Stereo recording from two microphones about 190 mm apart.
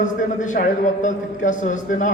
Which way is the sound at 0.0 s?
40° left (ahead or behind).